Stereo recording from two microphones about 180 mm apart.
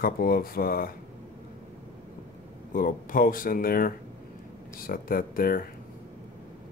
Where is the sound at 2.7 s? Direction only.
50° left (ahead or behind).